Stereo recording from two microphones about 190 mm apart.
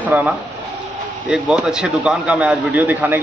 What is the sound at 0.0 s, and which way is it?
A man's voice, 10° right (ahead or behind).